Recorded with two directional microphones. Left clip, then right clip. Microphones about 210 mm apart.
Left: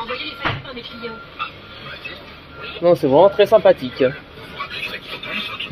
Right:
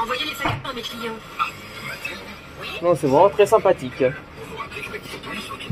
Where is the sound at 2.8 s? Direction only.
25° left (ahead or behind).